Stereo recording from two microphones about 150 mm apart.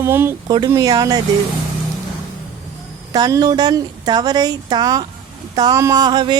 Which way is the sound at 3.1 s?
25° right (ahead or behind).